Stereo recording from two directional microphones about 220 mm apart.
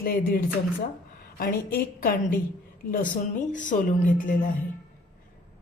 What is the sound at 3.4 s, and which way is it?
Speech, 35° left (ahead or behind).